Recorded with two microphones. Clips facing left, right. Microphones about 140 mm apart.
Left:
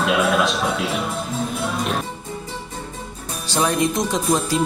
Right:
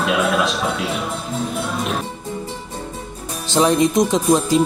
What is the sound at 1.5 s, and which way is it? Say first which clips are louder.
Music: right 1 dB; centre (ahead or behind).